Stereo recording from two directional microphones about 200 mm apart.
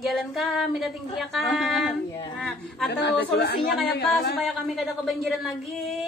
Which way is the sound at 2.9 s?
60° left (ahead or behind).